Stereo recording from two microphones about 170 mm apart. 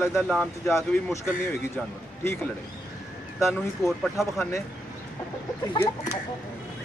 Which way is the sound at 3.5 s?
Centre (ahead or behind).